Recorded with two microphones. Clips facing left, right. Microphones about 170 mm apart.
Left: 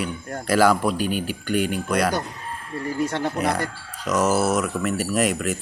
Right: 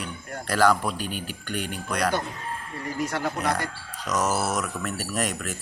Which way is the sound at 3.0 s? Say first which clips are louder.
Left 4 dB; 30° left (ahead or behind).